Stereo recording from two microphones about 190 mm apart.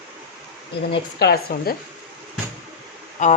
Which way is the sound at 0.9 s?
55° left (ahead or behind).